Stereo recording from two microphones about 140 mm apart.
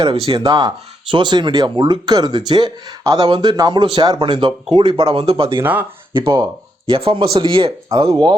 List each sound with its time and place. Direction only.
0.0 s speech: 40° right (ahead or behind)
0.3 s speech: 30° right (ahead or behind)
6.2 s speech: 30° right (ahead or behind)